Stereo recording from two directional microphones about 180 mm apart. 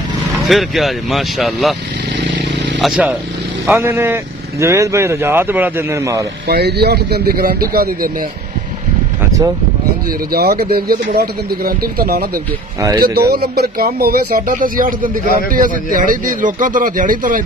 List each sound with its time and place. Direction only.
0.5 s speech: centre (ahead or behind)
2.8 s speech: centre (ahead or behind)
3.6 s speech: 15° right (ahead or behind)
6.4 s speech: 65° right (ahead or behind)
10.3 s a man's voice: 60° right (ahead or behind)